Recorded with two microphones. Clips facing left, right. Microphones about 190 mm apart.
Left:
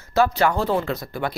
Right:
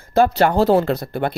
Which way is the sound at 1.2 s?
50° right (ahead or behind).